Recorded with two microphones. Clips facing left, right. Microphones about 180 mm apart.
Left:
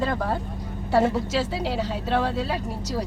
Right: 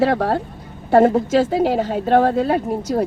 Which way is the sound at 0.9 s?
50° right (ahead or behind).